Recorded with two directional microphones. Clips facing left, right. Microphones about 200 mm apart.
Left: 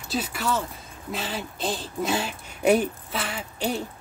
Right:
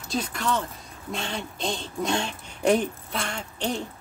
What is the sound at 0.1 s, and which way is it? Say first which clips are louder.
Speech: even; 5° left (ahead or behind).